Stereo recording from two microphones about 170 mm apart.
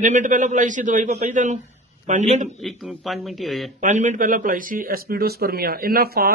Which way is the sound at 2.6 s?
Centre (ahead or behind).